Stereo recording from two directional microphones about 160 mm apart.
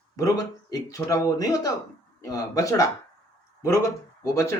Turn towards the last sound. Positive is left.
turn(degrees=20)  # may be behind; listen again after turning